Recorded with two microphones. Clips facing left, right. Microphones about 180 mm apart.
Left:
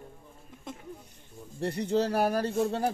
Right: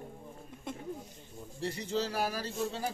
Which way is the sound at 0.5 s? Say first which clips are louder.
Right 1 dB; centre (ahead or behind).